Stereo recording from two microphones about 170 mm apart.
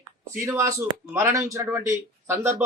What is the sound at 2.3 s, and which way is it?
Speech, 45° right (ahead or behind).